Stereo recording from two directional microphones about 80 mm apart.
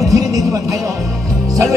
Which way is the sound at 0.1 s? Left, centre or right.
Right.